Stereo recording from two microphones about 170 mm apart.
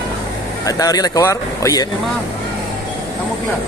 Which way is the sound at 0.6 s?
20° left (ahead or behind).